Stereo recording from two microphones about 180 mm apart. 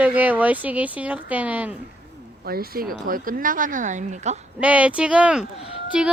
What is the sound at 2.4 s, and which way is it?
Speech, 55° right (ahead or behind).